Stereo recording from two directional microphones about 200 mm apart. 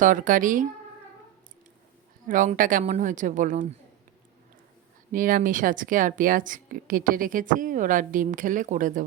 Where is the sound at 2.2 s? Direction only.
40° right (ahead or behind).